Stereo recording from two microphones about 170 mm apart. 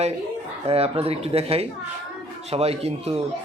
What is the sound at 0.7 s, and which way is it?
Speech, 35° right (ahead or behind).